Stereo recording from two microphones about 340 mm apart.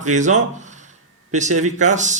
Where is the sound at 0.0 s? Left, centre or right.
Right.